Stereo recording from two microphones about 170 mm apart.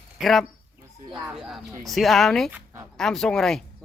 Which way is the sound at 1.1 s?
20° right (ahead or behind).